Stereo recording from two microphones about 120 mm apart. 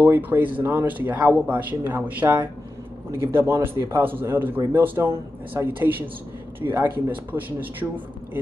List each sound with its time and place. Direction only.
0.0 s a man's voice: 15° right (ahead or behind)